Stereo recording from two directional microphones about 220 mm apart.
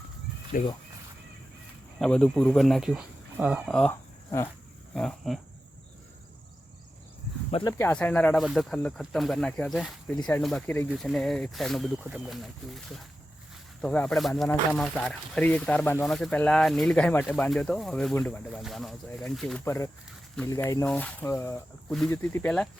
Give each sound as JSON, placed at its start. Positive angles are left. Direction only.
{"t": 0.5, "sound": "speech", "side_deg": 40}
{"t": 2.0, "sound": "speech", "side_deg": 5}
{"t": 4.9, "sound": "speech", "side_deg": 0}
{"t": 7.5, "sound": "speech", "side_deg": 15}